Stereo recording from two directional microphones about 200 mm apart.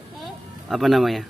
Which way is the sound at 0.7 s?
Centre (ahead or behind).